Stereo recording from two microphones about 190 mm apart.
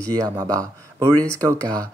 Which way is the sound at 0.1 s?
20° right (ahead or behind).